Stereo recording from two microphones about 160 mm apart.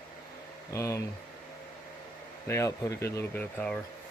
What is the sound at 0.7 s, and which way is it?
Speech, 20° left (ahead or behind).